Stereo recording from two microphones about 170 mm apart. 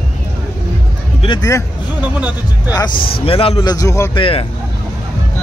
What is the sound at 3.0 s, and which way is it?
Speech, 60° left (ahead or behind).